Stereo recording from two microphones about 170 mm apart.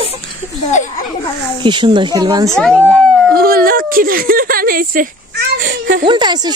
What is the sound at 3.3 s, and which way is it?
Speech, 60° right (ahead or behind).